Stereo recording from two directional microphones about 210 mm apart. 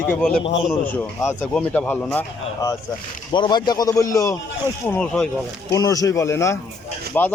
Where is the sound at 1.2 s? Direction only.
5° left (ahead or behind).